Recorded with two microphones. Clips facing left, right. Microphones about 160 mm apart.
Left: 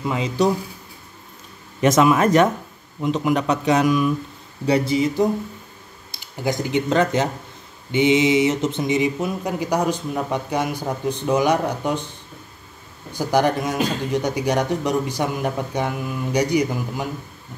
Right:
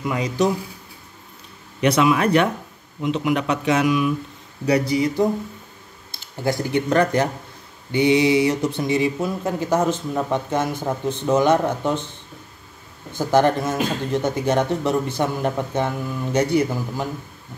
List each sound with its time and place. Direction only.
0.0 s speech: 25° left (ahead or behind)
1.8 s speech: 45° left (ahead or behind)
4.6 s speech: 25° left (ahead or behind)
6.1 s speech: 15° left (ahead or behind)
13.2 s speech: 15° left (ahead or behind)